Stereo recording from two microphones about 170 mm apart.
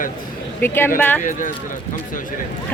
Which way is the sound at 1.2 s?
50° left (ahead or behind).